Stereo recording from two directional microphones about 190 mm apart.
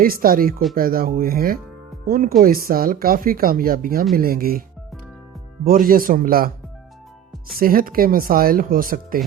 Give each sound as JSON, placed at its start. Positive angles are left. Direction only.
{"t": 0.0, "sound": "speech", "side_deg": -50}
{"t": 5.6, "sound": "speech", "side_deg": -50}
{"t": 7.5, "sound": "speech", "side_deg": -50}